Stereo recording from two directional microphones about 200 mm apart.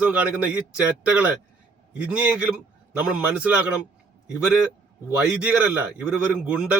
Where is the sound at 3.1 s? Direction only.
5° right (ahead or behind).